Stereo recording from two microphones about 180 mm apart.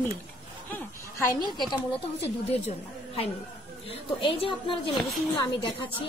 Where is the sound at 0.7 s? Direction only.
15° left (ahead or behind).